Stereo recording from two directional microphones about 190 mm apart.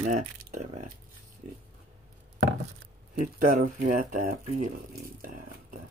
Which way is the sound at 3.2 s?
45° right (ahead or behind).